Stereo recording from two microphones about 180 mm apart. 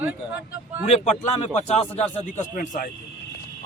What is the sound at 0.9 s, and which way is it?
A man's voice, 40° left (ahead or behind).